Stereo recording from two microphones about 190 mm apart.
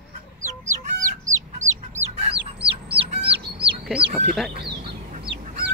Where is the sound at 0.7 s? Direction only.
40° right (ahead or behind).